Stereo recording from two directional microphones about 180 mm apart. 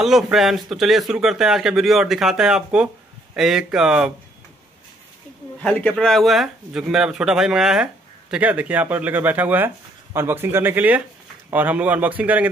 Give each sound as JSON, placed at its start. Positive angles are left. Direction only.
{"t": 0.0, "sound": "speech", "side_deg": 0}
{"t": 5.6, "sound": "a man's voice", "side_deg": 5}